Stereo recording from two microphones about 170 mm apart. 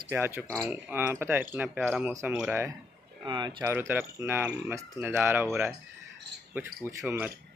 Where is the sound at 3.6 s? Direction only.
10° right (ahead or behind).